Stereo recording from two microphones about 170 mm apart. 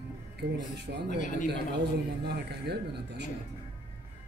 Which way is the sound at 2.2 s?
75° right (ahead or behind).